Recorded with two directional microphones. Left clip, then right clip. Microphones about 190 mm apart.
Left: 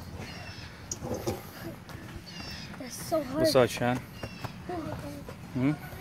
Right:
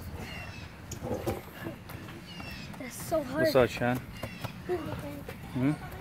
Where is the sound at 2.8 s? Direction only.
15° right (ahead or behind).